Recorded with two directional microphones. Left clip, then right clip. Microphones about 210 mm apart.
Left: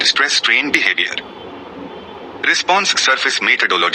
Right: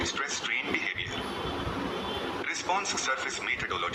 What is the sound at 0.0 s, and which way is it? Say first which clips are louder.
Speech: left 18 dB; 40° left (ahead or behind).